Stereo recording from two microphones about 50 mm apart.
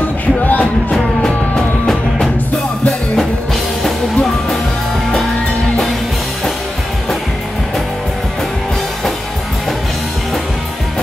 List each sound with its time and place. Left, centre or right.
0.5 s music: left
3.8 s music: centre